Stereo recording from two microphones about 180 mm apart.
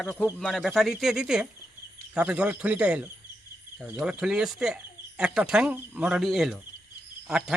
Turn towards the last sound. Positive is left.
turn(degrees=-5)  # may be behind; listen again after turning